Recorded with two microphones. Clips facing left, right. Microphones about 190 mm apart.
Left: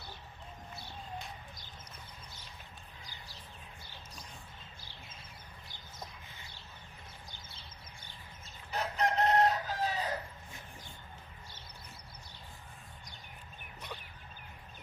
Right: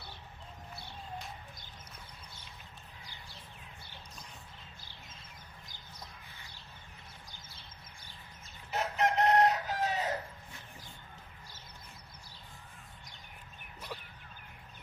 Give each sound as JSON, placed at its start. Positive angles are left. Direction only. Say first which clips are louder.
{"t": 8.7, "sound": "chicken", "louder": "right 2 dB", "side_deg": -20}